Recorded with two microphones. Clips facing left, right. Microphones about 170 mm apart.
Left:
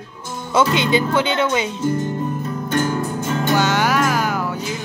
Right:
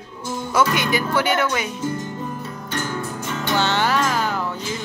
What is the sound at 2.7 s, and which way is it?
Music, 45° left (ahead or behind).